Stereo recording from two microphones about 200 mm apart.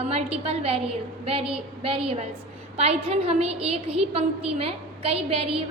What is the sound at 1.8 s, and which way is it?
A woman's voice, 25° right (ahead or behind).